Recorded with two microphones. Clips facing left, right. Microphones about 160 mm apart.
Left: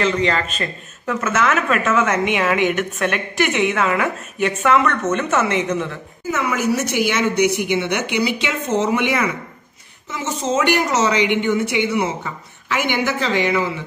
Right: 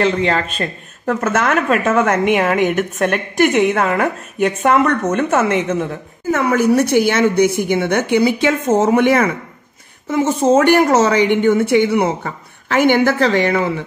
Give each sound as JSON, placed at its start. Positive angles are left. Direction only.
{"t": 0.0, "sound": "a woman's voice", "side_deg": -50}